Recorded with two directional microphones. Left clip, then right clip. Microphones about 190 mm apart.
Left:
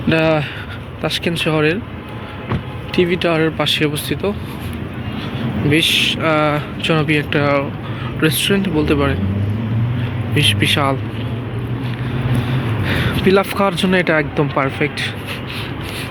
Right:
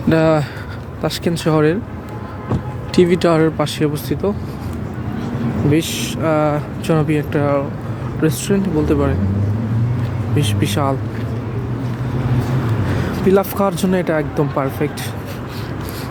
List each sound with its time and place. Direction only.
0.1 s speech: 20° right (ahead or behind)
2.9 s speech: 35° right (ahead or behind)
3.4 s speech: 20° right (ahead or behind)
5.7 s speech: 10° right (ahead or behind)
10.3 s speech: 10° right (ahead or behind)
12.9 s speech: 5° right (ahead or behind)